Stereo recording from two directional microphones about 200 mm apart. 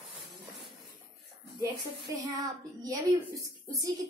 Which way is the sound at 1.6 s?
15° right (ahead or behind).